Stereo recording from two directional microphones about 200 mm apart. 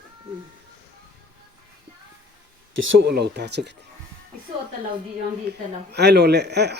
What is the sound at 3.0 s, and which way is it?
Speech, 55° right (ahead or behind).